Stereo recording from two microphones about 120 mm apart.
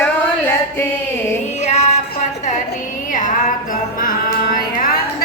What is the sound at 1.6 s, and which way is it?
Music, 65° left (ahead or behind).